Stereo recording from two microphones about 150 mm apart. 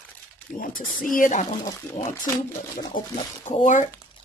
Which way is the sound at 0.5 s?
65° left (ahead or behind).